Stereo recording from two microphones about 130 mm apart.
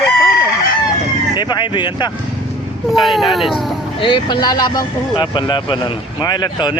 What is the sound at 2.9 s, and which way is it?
Speech, centre (ahead or behind).